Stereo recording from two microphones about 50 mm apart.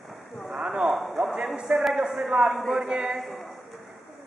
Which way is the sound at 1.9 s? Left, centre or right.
Centre.